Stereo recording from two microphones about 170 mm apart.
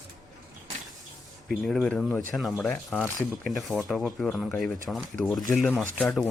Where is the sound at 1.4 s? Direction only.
5° left (ahead or behind).